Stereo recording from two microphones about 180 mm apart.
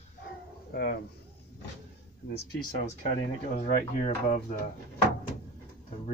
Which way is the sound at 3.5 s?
40° left (ahead or behind).